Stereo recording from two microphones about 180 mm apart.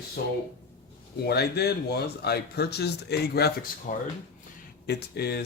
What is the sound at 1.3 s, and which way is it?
Speech, 65° left (ahead or behind).